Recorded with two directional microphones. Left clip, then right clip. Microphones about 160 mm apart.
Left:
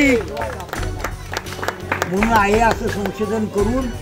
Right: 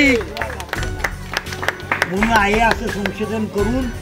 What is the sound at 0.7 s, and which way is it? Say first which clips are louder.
Music: right 3 dB; 90° left.